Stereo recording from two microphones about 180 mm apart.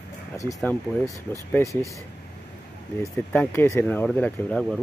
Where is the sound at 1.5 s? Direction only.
15° left (ahead or behind).